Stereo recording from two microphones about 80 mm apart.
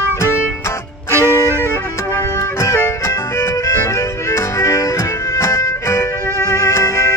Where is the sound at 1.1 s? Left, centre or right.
Right.